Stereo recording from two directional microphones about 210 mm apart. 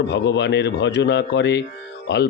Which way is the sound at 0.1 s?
55° left (ahead or behind).